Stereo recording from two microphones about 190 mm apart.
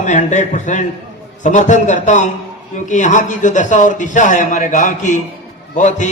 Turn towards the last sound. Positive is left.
turn(degrees=40)  # may be behind; listen again after turning